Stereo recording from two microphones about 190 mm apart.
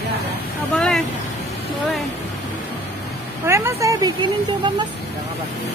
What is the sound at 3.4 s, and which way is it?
Speech, 15° right (ahead or behind).